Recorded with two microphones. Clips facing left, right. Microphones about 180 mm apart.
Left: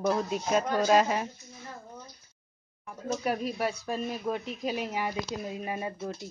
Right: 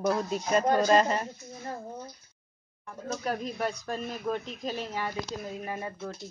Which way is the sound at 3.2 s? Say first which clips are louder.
Left 1 dB; 10° left (ahead or behind).